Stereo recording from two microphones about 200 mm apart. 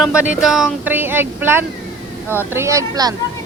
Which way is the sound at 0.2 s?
5° right (ahead or behind).